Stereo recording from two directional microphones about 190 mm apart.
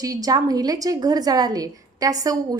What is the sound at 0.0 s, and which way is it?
A woman's voice, 20° right (ahead or behind).